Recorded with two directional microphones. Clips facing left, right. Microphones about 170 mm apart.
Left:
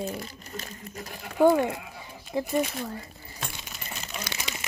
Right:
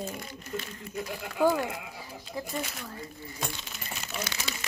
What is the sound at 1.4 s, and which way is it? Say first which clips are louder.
Speech: left 5 dB; 25° left (ahead or behind).